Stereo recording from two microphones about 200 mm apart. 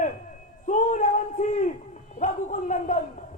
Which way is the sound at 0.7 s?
40° left (ahead or behind).